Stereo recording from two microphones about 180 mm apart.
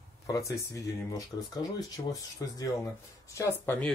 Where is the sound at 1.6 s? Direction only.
20° left (ahead or behind).